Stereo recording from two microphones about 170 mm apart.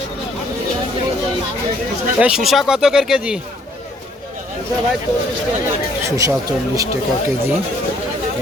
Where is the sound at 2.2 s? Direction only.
5° right (ahead or behind).